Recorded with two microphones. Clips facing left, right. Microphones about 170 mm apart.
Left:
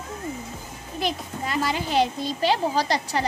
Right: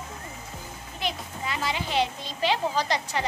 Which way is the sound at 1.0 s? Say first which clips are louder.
Left 4 dB; 45° left (ahead or behind).